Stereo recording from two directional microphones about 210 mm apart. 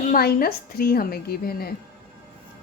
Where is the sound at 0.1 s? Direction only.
45° left (ahead or behind).